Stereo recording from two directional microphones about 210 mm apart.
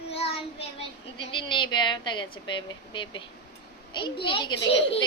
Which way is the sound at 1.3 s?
20° left (ahead or behind).